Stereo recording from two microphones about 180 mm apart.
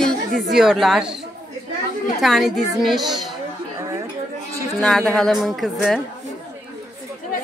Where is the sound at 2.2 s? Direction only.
Centre (ahead or behind).